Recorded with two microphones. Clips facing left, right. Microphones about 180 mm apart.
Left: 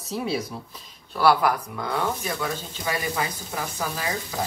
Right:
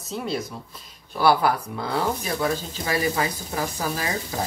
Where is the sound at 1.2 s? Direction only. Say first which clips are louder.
Even; 30° right (ahead or behind).